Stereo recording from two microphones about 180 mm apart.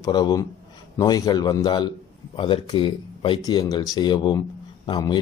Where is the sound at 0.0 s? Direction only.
20° left (ahead or behind).